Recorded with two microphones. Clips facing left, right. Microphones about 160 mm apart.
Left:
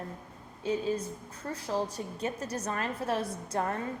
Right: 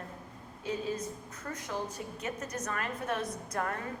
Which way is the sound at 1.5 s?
30° left (ahead or behind).